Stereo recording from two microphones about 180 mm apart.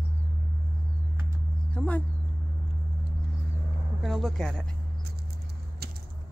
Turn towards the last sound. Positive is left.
turn(degrees=-60)  # may be behind; listen again after turning